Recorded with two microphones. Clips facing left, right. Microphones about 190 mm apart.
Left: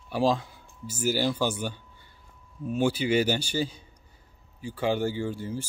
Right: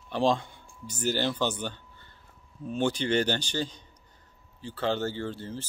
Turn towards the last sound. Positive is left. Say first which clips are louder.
# left 3 dB
turn(degrees=10)  # may be behind; listen again after turning